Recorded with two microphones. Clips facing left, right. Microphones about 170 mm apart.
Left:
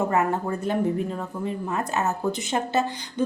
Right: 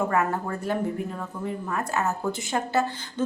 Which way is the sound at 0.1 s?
20° left (ahead or behind).